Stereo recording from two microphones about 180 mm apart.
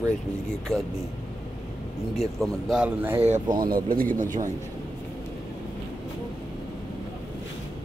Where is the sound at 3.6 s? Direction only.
50° right (ahead or behind).